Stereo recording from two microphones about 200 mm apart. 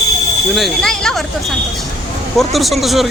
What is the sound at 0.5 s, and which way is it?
Speech, centre (ahead or behind).